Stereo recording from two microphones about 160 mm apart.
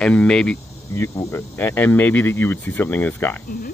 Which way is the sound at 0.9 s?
15° left (ahead or behind).